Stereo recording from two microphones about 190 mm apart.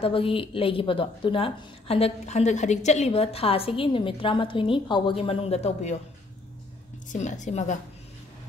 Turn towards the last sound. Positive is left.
turn(degrees=40)  # may be behind; listen again after turning